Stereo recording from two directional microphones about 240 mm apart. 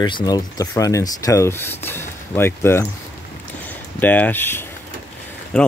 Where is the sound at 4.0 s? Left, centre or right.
Centre.